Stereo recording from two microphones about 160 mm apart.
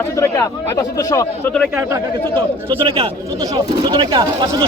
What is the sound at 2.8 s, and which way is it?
Speech, 35° right (ahead or behind).